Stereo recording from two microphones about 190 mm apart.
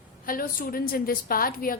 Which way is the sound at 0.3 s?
50° left (ahead or behind).